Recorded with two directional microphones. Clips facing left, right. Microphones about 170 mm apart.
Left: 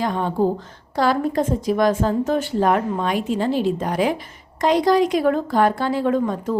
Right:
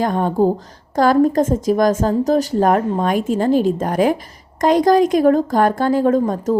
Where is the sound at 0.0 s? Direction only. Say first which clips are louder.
Right 4 dB; 45° right (ahead or behind).